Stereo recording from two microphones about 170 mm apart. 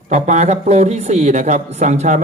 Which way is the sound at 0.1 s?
40° right (ahead or behind).